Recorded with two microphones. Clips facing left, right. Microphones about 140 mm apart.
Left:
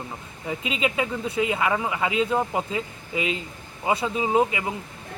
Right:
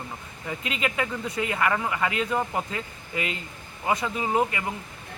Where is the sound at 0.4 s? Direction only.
15° left (ahead or behind).